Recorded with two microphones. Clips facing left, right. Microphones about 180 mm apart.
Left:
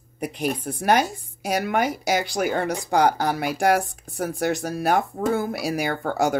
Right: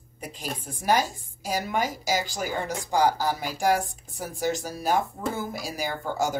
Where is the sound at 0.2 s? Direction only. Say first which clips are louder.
Left 9 dB; 70° left (ahead or behind).